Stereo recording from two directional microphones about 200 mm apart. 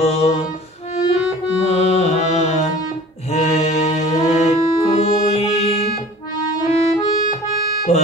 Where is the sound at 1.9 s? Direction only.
35° left (ahead or behind).